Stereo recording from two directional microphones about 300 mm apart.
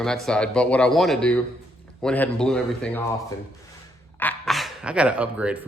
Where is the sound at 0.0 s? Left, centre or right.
Centre.